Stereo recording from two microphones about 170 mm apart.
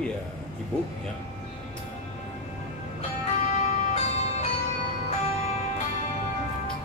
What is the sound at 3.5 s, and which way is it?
Music, 40° left (ahead or behind).